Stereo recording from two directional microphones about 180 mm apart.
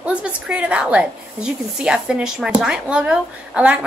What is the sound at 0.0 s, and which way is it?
A woman's voice, 5° right (ahead or behind).